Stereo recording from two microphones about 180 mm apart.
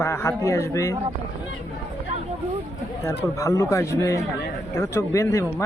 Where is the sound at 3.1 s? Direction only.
15° left (ahead or behind).